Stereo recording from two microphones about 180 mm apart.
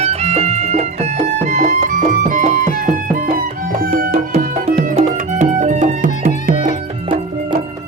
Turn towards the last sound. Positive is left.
turn(degrees=-50)  # may be behind; listen again after turning